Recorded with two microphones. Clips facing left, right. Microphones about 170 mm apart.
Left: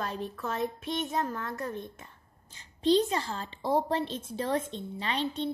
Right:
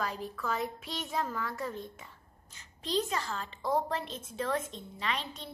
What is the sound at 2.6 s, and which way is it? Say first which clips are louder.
A woman's voice: left 8 dB; 30° left (ahead or behind).